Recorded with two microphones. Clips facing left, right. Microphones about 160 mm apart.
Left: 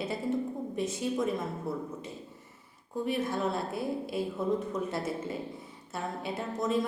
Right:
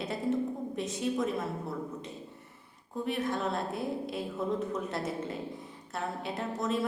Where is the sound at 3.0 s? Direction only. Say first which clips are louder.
Left 1 dB; centre (ahead or behind).